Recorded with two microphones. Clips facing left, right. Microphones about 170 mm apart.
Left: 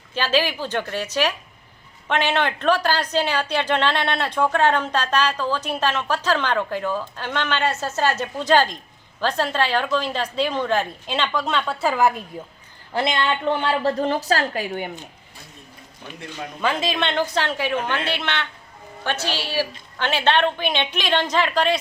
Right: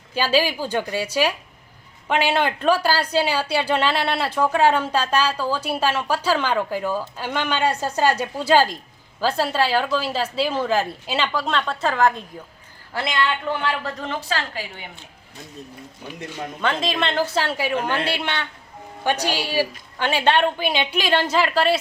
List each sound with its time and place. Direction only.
0.1 s a woman's voice: 10° right (ahead or behind); by 12.2 s 10° left (ahead or behind)
12.9 s a woman's voice: 20° left (ahead or behind); by 14.8 s 50° left (ahead or behind)
16.6 s a woman's voice: centre (ahead or behind)